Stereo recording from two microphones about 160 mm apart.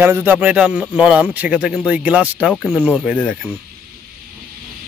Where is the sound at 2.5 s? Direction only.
5° left (ahead or behind).